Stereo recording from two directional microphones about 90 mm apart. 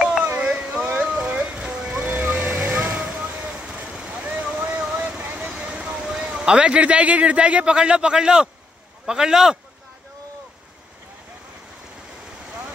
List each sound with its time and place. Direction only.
0.0 s a sound: 10° right (ahead or behind)
1.2 s music: 20° right (ahead or behind)
1.6 s vehicle: 10° right (ahead or behind)
5.5 s a man's voice: 10° right (ahead or behind)